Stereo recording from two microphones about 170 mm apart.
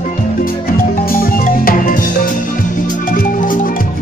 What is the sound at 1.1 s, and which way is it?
Music, 60° left (ahead or behind).